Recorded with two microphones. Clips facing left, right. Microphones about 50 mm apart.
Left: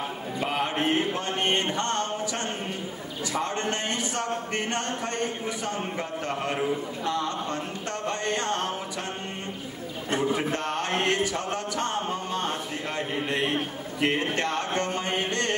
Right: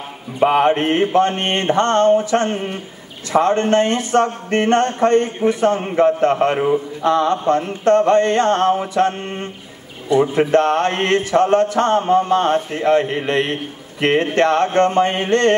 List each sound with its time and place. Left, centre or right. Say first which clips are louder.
0.4 s speech: right 13 dB; right
10.1 s speech: right 13 dB; left
10.4 s speech: right 14 dB; right